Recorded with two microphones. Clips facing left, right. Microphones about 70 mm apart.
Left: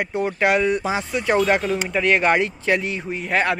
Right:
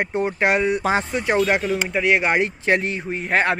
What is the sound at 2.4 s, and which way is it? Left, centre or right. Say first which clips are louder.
Speech: right 1 dB; right.